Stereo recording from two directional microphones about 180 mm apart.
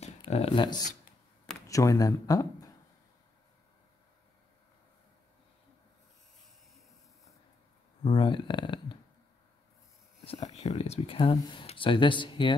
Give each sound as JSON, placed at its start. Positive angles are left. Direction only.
{"t": 0.0, "sound": "speech", "side_deg": 35}
{"t": 8.0, "sound": "speech", "side_deg": 30}
{"t": 10.2, "sound": "speech", "side_deg": 35}